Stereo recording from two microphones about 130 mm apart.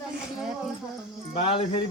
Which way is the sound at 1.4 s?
45° left (ahead or behind).